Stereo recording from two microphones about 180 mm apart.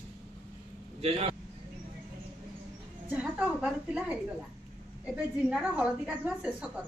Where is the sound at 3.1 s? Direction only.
5° right (ahead or behind).